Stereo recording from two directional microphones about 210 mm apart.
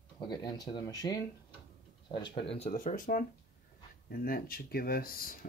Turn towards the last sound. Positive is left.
turn(degrees=45)  # may be behind; listen again after turning